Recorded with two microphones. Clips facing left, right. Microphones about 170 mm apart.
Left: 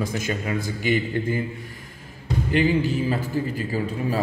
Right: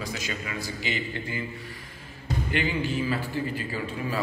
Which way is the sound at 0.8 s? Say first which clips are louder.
Left 11 dB; 50° left (ahead or behind).